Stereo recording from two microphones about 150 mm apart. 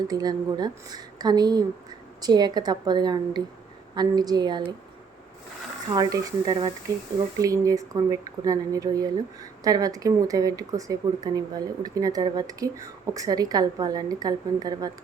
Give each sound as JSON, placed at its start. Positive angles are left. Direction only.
{"t": 0.1, "sound": "speech", "side_deg": -25}
{"t": 5.9, "sound": "speech", "side_deg": -25}